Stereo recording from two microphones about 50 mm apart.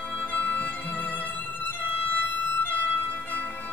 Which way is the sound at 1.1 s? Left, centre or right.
Left.